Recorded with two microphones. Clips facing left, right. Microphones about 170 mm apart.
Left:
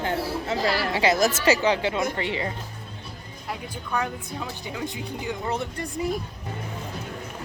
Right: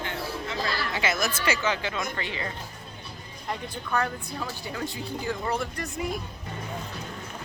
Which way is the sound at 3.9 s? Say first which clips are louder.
Even; 15° left (ahead or behind).